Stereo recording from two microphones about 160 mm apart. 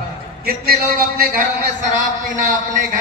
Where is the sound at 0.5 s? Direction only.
70° right (ahead or behind).